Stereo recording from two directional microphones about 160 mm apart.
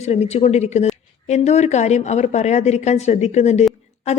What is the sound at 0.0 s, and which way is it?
A woman's voice, 40° left (ahead or behind).